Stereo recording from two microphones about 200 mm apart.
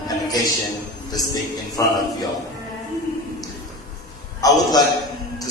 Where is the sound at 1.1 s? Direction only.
20° left (ahead or behind).